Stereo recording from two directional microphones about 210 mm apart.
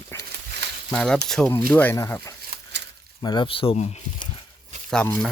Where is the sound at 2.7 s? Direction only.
55° right (ahead or behind).